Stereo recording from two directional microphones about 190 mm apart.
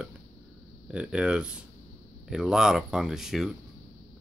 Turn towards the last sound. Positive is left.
turn(degrees=0)  # may be behind; listen again after turning